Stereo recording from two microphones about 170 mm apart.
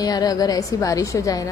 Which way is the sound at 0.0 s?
20° left (ahead or behind).